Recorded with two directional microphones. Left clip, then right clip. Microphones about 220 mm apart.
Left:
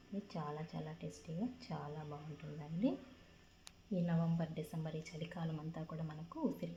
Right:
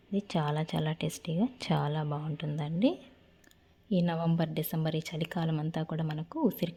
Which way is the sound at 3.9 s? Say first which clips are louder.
Right 10 dB; 50° right (ahead or behind).